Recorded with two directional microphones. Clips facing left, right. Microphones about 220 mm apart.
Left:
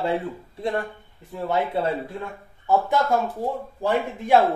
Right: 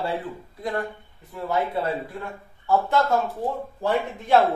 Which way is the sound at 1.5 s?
25° left (ahead or behind).